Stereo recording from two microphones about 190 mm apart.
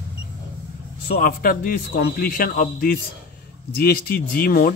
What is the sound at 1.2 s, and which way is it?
A man's voice, 45° left (ahead or behind).